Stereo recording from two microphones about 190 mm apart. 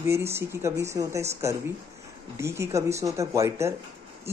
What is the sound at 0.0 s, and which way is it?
Speech, 15° right (ahead or behind).